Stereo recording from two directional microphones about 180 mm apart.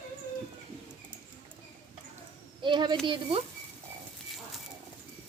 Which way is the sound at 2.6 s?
25° right (ahead or behind).